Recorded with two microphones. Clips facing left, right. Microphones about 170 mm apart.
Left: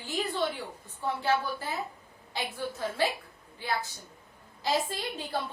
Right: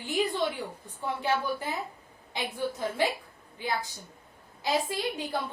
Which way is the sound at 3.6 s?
15° right (ahead or behind).